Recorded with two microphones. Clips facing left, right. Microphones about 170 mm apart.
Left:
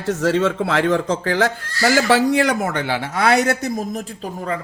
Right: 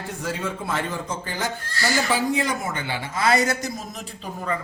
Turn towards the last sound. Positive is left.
turn(degrees=70)  # may be behind; listen again after turning